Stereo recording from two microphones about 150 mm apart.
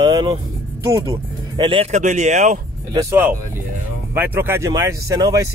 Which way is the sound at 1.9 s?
50° right (ahead or behind).